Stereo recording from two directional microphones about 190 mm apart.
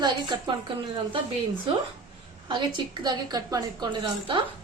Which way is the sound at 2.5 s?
25° right (ahead or behind).